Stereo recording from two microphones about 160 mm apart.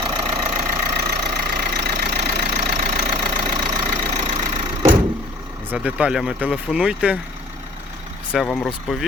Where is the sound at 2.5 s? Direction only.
50° right (ahead or behind).